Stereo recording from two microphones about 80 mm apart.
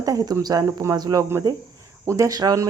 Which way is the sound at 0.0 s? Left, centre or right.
Right.